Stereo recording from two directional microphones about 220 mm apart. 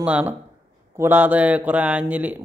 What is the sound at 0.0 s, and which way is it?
A man's voice, 5° right (ahead or behind).